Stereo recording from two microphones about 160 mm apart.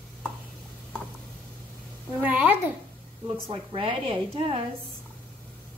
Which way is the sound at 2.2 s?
10° right (ahead or behind).